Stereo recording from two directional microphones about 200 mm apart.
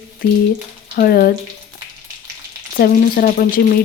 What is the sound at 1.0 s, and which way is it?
Speech, 50° left (ahead or behind).